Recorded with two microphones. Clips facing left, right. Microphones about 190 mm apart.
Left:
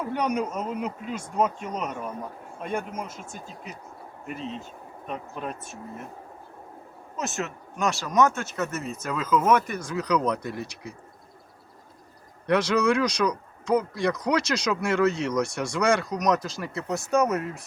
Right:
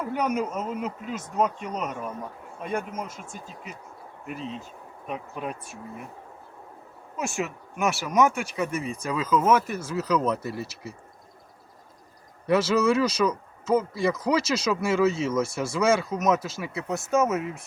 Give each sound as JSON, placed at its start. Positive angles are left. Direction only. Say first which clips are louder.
{"t": 0.0, "sound": "speech", "louder": "even", "side_deg": -5}
{"t": 4.3, "sound": "speech", "louder": "even", "side_deg": 0}
{"t": 7.2, "sound": "speech", "louder": "right 1 dB", "side_deg": -10}
{"t": 12.5, "sound": "speech", "louder": "right 1 dB", "side_deg": -5}